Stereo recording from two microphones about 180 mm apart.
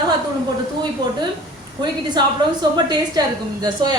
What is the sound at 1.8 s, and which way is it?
A woman's voice, 25° right (ahead or behind).